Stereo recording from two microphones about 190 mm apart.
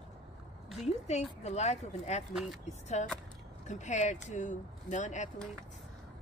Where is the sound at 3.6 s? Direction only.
40° left (ahead or behind).